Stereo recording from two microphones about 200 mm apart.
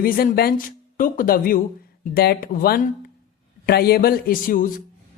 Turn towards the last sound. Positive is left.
turn(degrees=45)  # may be behind; listen again after turning